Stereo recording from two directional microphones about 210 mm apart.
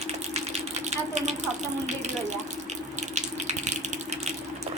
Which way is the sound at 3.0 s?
35° right (ahead or behind).